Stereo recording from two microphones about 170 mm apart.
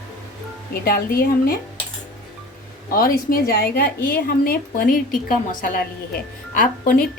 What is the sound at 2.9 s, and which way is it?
A woman's voice, 55° left (ahead or behind).